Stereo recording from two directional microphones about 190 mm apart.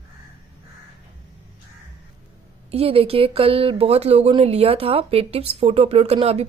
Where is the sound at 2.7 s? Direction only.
30° right (ahead or behind).